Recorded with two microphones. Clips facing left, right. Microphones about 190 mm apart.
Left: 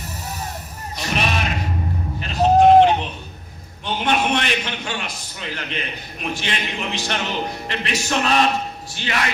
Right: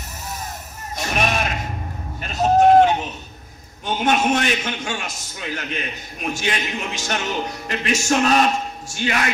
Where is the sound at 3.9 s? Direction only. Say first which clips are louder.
Right 2 dB; 45° right (ahead or behind).